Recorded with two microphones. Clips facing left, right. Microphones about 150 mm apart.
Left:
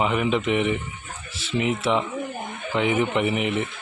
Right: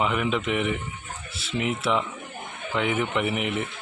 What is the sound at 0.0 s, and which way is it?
Speech, centre (ahead or behind).